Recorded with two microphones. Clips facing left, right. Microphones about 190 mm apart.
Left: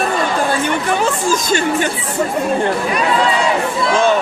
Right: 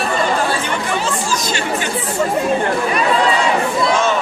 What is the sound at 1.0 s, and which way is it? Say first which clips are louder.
Speech: left 4 dB; 50° left (ahead or behind).